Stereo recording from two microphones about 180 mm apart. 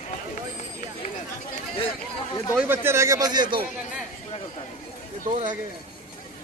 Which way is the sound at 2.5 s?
10° right (ahead or behind).